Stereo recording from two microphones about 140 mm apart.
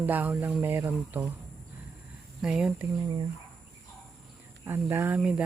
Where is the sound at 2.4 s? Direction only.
5° right (ahead or behind).